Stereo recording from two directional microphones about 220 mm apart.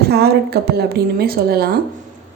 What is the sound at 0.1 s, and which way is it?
A woman's voice, 45° right (ahead or behind).